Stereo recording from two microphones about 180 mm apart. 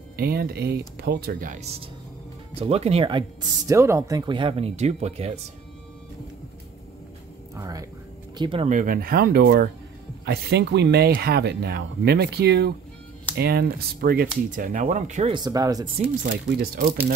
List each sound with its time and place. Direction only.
0.1 s speech: 55° right (ahead or behind); by 3.7 s 25° right (ahead or behind)
3.7 s speech: 15° right (ahead or behind); by 5.4 s 35° right (ahead or behind)
7.5 s speech: 20° right (ahead or behind)
8.4 s speech: 30° right (ahead or behind)
8.6 s speech: 50° right (ahead or behind)
15.3 s speech: 20° right (ahead or behind)
16.2 s speech: 60° right (ahead or behind)